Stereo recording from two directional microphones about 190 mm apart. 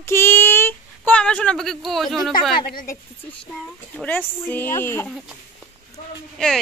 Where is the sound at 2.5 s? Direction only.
50° left (ahead or behind).